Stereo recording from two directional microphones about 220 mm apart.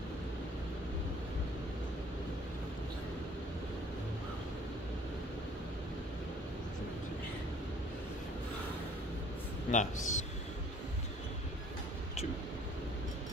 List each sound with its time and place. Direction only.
9.7 s a man's voice: 35° left (ahead or behind)